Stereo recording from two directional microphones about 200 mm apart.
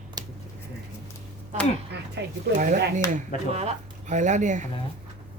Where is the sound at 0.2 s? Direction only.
20° right (ahead or behind).